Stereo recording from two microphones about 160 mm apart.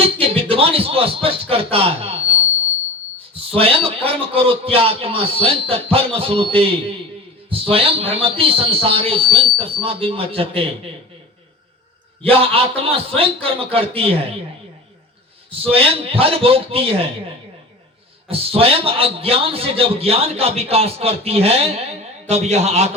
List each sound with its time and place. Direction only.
0.0 s speech: 35° right (ahead or behind)
3.5 s a man's voice: 35° right (ahead or behind)
12.3 s a man's voice: 35° right (ahead or behind)
15.4 s a man's voice: 35° right (ahead or behind)